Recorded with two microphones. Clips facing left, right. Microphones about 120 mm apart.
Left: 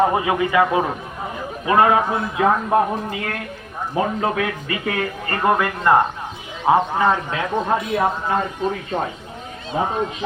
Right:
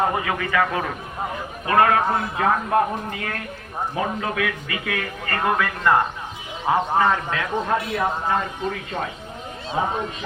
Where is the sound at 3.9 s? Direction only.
35° left (ahead or behind).